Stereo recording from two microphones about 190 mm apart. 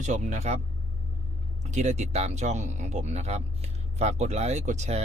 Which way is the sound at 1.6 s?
35° right (ahead or behind).